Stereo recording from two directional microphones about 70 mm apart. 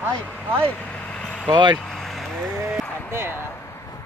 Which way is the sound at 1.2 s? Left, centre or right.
Centre.